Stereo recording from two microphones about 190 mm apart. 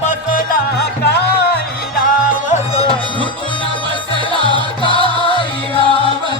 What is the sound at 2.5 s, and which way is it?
Music, 35° left (ahead or behind).